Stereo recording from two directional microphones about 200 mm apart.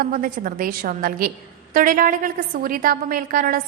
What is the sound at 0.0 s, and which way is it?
A woman's voice, 45° right (ahead or behind).